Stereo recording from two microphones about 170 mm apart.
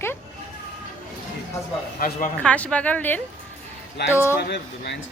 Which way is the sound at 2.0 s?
55° left (ahead or behind).